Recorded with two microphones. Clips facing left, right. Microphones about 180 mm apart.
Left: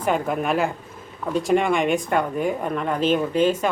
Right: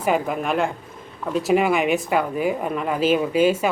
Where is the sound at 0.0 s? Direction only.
5° right (ahead or behind).